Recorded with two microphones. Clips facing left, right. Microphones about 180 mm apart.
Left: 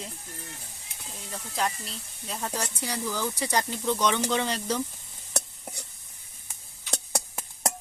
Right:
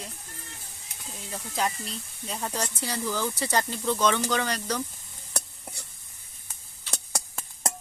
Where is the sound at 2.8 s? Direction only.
10° left (ahead or behind).